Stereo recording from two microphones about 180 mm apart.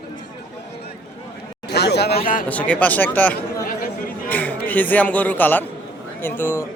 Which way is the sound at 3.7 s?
50° left (ahead or behind).